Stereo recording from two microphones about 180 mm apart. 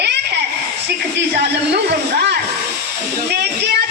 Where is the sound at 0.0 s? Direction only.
70° right (ahead or behind).